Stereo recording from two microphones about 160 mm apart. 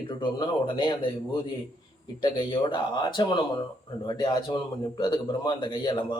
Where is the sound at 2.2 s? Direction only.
30° left (ahead or behind).